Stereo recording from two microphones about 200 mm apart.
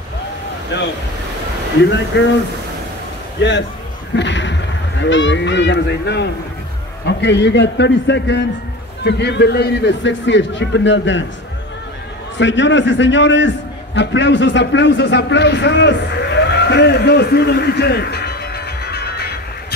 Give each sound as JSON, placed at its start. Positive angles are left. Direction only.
{"t": 0.7, "sound": "a man's voice", "side_deg": 65}
{"t": 2.1, "sound": "a man's voice", "side_deg": 65}
{"t": 4.1, "sound": "a man's voice", "side_deg": 65}
{"t": 12.4, "sound": "a man's voice", "side_deg": 65}